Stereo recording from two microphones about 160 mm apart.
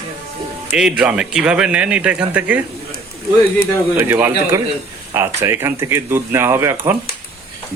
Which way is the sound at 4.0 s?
15° right (ahead or behind).